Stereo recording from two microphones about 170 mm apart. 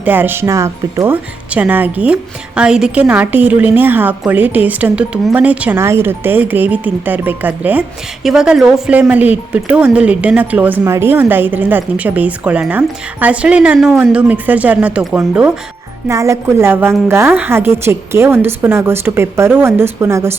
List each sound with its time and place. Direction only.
0.0 s speech: 10° right (ahead or behind)